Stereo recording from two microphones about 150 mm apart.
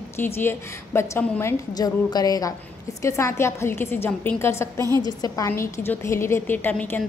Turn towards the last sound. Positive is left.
turn(degrees=10)  # may be behind; listen again after turning